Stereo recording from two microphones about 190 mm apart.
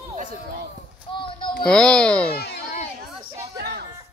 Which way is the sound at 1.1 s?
25° left (ahead or behind).